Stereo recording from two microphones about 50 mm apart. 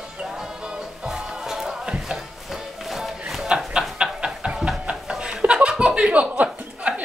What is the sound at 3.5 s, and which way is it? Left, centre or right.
Chuckle, right.